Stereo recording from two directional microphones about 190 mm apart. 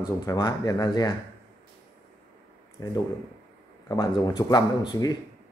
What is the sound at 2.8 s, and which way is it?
Speech, 20° left (ahead or behind).